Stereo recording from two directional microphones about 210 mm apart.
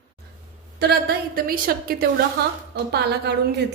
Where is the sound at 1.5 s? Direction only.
45° right (ahead or behind).